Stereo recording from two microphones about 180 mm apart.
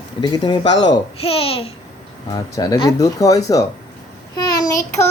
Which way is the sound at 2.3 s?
20° left (ahead or behind).